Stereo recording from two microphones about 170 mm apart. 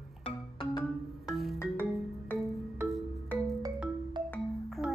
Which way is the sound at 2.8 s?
Centre (ahead or behind).